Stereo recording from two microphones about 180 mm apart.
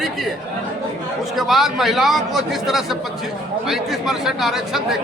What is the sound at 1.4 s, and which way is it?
Speech, centre (ahead or behind).